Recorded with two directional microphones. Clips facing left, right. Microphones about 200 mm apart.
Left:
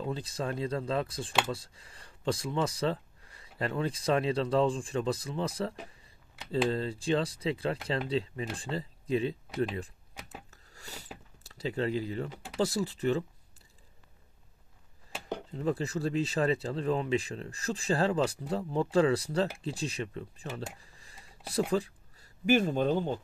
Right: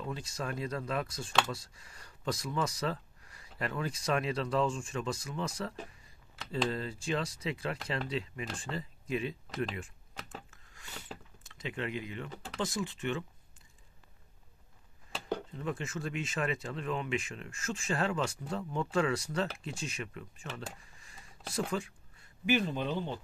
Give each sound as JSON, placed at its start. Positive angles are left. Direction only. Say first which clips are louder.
{"t": 0.0, "sound": "speech", "louder": "left 4 dB", "side_deg": 30}
{"t": 10.5, "sound": "wood", "louder": "left 2 dB", "side_deg": 40}
{"t": 11.4, "sound": "speech", "louder": "left 6 dB", "side_deg": 35}
{"t": 15.5, "sound": "speech", "louder": "left 6 dB", "side_deg": 35}